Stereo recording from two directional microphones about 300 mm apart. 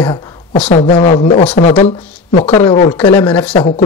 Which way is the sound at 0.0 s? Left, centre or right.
Centre.